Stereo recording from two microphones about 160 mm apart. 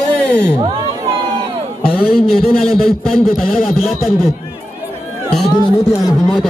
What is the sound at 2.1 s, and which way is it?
Speech, 75° left (ahead or behind).